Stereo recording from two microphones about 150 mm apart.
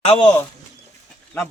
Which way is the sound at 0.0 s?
40° left (ahead or behind).